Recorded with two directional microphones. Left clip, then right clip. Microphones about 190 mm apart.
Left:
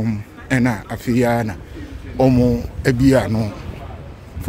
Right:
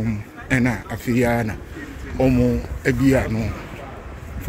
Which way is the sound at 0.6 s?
30° left (ahead or behind).